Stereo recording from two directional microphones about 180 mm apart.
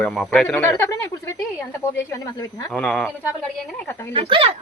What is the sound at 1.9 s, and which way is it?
Speech, 15° left (ahead or behind).